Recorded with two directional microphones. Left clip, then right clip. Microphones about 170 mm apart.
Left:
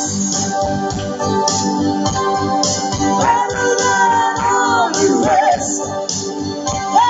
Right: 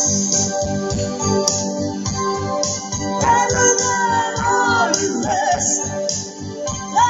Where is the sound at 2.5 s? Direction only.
25° right (ahead or behind).